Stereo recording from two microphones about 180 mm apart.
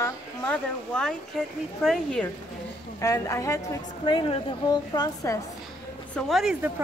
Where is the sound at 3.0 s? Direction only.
15° left (ahead or behind).